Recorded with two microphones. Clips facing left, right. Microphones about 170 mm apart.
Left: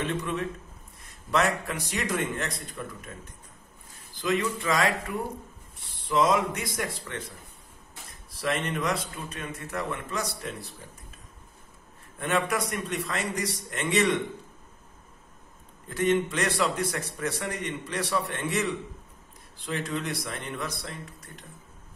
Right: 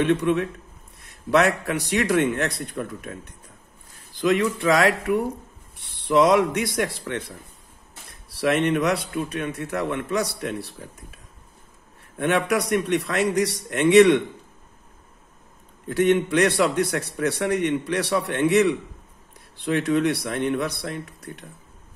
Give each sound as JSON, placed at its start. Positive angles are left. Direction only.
{"t": 0.0, "sound": "speech", "side_deg": -70}
{"t": 12.2, "sound": "speech", "side_deg": -70}
{"t": 15.9, "sound": "a man's voice", "side_deg": -70}